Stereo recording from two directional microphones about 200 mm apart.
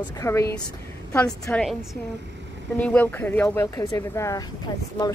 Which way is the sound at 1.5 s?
Centre (ahead or behind).